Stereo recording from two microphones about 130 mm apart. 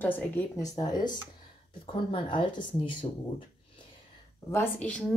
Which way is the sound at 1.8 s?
40° left (ahead or behind).